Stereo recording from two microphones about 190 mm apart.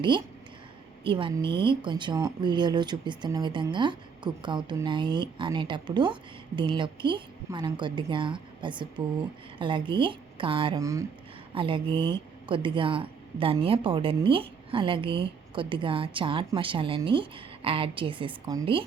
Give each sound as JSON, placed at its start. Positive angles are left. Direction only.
{"t": 1.0, "sound": "speech", "side_deg": -25}
{"t": 10.8, "sound": "speech", "side_deg": -15}